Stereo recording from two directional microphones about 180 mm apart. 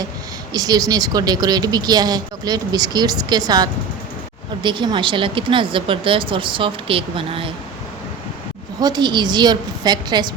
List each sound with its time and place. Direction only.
0.5 s a woman's voice: 20° right (ahead or behind)
8.8 s a woman's voice: 25° right (ahead or behind)